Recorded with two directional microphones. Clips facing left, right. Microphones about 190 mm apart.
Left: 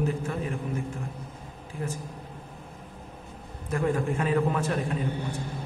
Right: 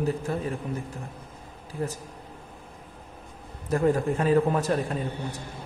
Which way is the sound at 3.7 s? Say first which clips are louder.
Right 3 dB; 35° right (ahead or behind).